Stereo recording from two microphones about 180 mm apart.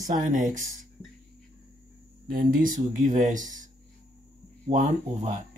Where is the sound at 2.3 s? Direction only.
50° right (ahead or behind).